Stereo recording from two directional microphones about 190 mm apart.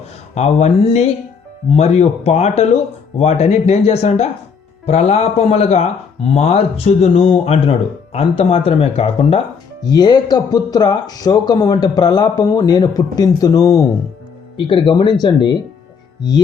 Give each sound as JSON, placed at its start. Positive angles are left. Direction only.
{"t": 0.3, "sound": "speech", "side_deg": 35}